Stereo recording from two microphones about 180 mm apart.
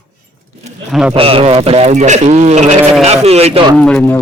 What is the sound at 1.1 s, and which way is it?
A man's voice, 30° right (ahead or behind).